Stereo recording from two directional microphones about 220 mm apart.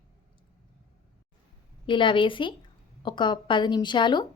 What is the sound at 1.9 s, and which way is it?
Speech, 20° left (ahead or behind).